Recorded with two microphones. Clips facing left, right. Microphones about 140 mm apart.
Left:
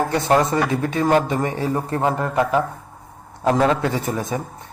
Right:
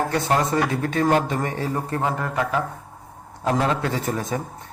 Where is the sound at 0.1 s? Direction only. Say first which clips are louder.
Left 3 dB; 20° left (ahead or behind).